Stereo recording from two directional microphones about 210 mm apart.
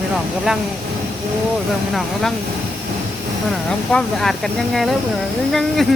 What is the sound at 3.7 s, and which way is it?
Speech, centre (ahead or behind).